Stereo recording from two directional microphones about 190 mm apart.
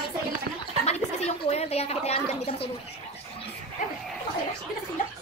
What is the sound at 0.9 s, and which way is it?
A woman's voice, 35° left (ahead or behind).